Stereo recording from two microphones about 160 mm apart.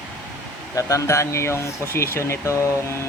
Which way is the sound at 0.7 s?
20° left (ahead or behind).